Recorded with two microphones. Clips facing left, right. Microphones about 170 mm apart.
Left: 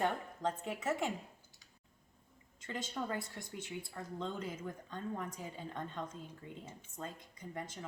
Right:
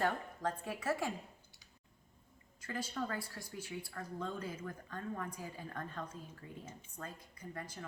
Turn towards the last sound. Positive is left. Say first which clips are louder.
# left 2 dB
turn(degrees=20)  # may be behind; listen again after turning